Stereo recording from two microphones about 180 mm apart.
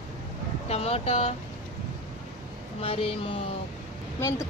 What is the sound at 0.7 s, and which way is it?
Speech, 35° left (ahead or behind).